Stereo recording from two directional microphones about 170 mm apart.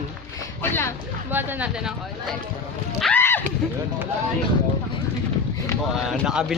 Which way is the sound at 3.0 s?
10° left (ahead or behind).